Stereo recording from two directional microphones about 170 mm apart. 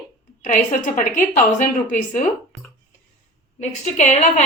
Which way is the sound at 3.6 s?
40° left (ahead or behind).